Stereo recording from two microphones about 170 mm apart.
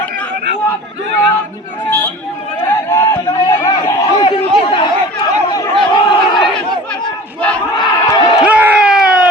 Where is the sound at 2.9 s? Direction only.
20° left (ahead or behind).